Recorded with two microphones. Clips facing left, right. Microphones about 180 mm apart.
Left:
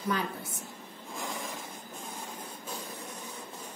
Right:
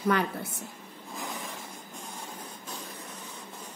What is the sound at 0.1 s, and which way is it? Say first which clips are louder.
Speech: right 5 dB; 65° right (ahead or behind).